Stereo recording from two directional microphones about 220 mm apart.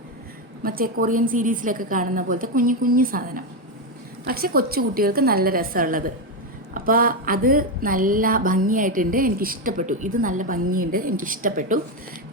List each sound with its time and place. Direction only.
0.6 s a woman's voice: 40° right (ahead or behind)